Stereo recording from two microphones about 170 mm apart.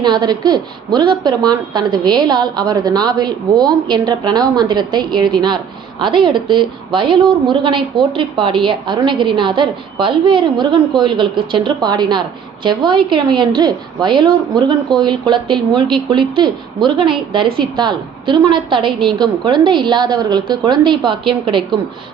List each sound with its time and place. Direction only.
0.0 s a woman's voice: 25° right (ahead or behind)